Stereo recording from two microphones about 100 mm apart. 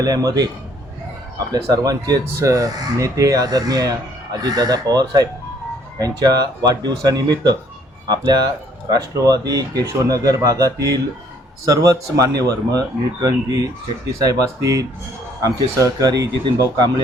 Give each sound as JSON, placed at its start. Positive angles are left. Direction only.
{"t": 0.0, "sound": "speech", "side_deg": -40}